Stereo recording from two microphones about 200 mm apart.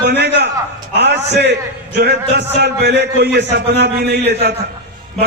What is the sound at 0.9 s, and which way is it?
A man's voice, 55° right (ahead or behind).